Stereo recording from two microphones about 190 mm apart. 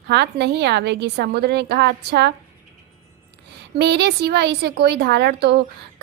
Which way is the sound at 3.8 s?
60° right (ahead or behind).